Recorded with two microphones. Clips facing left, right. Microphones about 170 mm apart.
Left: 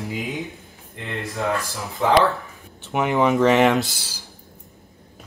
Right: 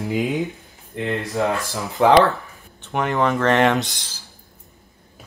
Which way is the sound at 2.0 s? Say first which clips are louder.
Right 5 dB; 70° right (ahead or behind).